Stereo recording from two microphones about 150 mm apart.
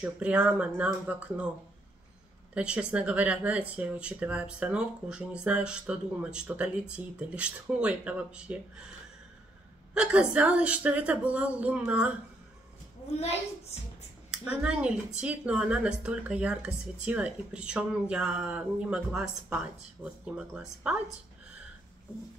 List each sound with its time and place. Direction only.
0.0 s speech: 5° right (ahead or behind)
2.5 s speech: 5° right (ahead or behind)
9.9 s speech: 10° right (ahead or behind)
14.3 s speech: 5° right (ahead or behind)